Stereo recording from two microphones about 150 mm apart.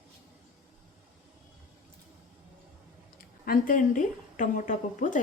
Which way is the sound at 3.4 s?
65° left (ahead or behind).